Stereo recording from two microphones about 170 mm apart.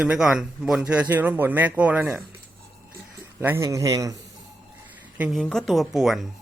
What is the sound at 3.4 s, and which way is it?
Speech, 15° right (ahead or behind).